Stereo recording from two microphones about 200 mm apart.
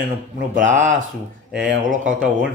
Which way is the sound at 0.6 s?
65° right (ahead or behind).